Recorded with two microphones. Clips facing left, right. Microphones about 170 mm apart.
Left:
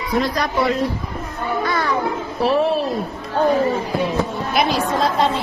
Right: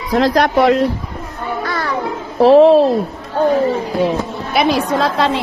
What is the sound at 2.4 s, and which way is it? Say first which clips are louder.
Speech: right 11 dB; 90° right.